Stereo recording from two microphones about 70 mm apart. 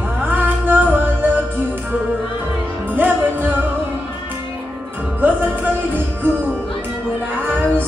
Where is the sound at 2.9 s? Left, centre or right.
Right.